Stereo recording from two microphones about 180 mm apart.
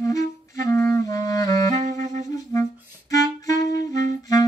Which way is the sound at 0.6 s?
15° left (ahead or behind).